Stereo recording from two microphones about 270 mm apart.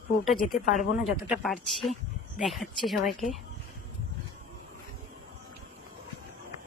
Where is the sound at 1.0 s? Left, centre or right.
Centre.